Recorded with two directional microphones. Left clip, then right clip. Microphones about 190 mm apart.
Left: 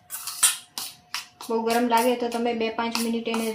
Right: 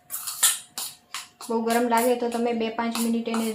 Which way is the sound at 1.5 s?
Centre (ahead or behind).